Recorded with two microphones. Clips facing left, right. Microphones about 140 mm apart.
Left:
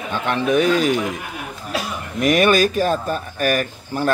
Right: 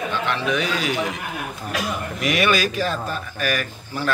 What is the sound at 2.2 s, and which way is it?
Speech, 45° left (ahead or behind).